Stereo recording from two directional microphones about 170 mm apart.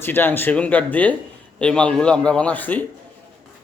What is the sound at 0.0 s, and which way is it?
A man's voice, 10° left (ahead or behind).